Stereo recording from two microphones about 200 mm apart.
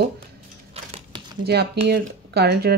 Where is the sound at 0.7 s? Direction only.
30° right (ahead or behind).